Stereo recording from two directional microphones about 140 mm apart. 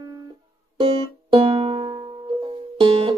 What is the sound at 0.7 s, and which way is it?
Music, 40° right (ahead or behind).